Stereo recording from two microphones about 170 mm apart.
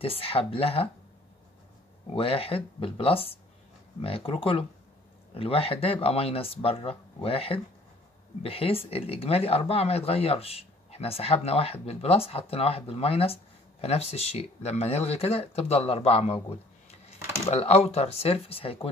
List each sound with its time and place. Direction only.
0.0 s speech: 35° left (ahead or behind)
2.1 s speech: 35° left (ahead or behind)